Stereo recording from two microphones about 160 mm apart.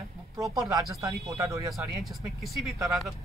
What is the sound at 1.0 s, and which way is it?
Speech, 20° right (ahead or behind).